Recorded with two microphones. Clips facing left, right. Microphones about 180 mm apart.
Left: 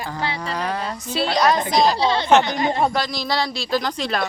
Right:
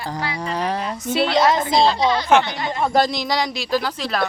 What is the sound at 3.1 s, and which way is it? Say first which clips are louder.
A man's voice: right 1 dB; 15° right (ahead or behind).